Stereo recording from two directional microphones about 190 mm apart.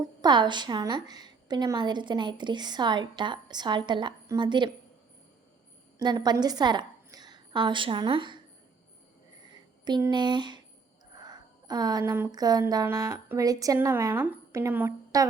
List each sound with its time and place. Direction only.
0.2 s a woman's voice: 25° right (ahead or behind)
6.0 s a woman's voice: 20° right (ahead or behind)
9.5 s speech: 25° right (ahead or behind)